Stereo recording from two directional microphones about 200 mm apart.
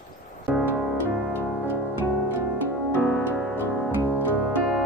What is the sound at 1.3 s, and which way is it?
Music, 10° left (ahead or behind).